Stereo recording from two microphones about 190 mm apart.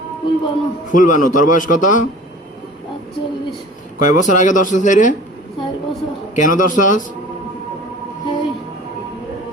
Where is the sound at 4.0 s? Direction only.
45° left (ahead or behind).